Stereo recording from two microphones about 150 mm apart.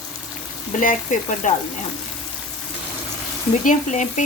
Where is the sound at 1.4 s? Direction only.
55° left (ahead or behind).